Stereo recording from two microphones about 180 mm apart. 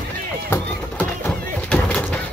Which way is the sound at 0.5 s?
10° left (ahead or behind).